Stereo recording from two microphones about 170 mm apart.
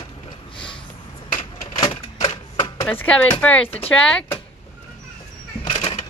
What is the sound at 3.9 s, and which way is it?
Speech, 5° left (ahead or behind).